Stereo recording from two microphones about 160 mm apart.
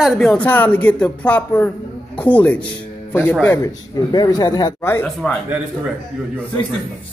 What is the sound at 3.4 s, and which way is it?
Speech, 20° left (ahead or behind).